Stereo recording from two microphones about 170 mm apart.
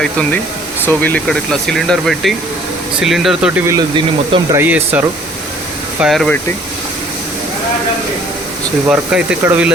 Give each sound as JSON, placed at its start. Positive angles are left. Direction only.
{"t": 0.0, "sound": "speech", "side_deg": 5}
{"t": 3.7, "sound": "speech", "side_deg": -25}
{"t": 4.5, "sound": "speech", "side_deg": -10}
{"t": 6.0, "sound": "speech", "side_deg": 0}
{"t": 8.9, "sound": "speech", "side_deg": -5}